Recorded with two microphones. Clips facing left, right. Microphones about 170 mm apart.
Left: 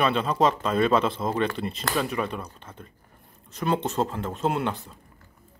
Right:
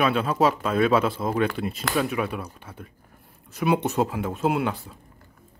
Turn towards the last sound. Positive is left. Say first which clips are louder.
# right 2 dB
turn(degrees=-5)  # may be behind; listen again after turning